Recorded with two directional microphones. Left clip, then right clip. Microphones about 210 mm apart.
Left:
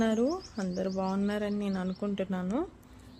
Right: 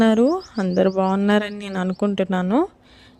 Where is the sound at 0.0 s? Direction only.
50° right (ahead or behind).